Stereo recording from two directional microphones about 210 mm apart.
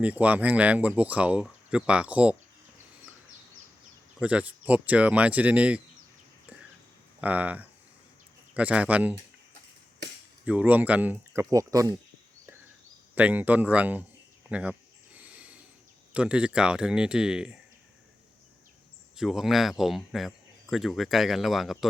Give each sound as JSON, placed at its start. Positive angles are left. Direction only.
{"t": 0.0, "sound": "speech", "side_deg": -5}
{"t": 4.2, "sound": "speech", "side_deg": -5}
{"t": 7.2, "sound": "speech", "side_deg": -5}
{"t": 10.4, "sound": "speech", "side_deg": -5}
{"t": 13.1, "sound": "speech", "side_deg": -5}
{"t": 14.5, "sound": "a sound", "side_deg": -5}
{"t": 16.1, "sound": "speech", "side_deg": -5}
{"t": 19.1, "sound": "speech", "side_deg": 0}